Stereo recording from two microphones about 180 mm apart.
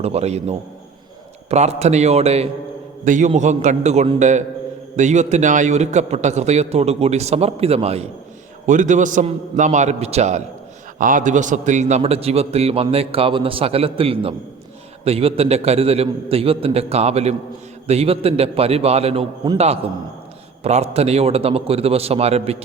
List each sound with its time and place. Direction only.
0.0 s a man's voice: 35° right (ahead or behind)